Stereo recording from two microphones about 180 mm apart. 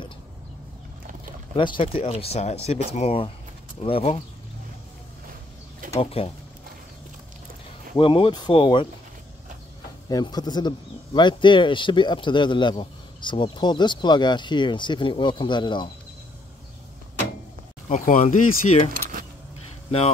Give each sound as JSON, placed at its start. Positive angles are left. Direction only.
{"t": 1.6, "sound": "speech", "side_deg": 25}
{"t": 5.9, "sound": "speech", "side_deg": 35}
{"t": 8.0, "sound": "speech", "side_deg": 30}
{"t": 10.0, "sound": "speech", "side_deg": 20}
{"t": 17.8, "sound": "speech", "side_deg": 45}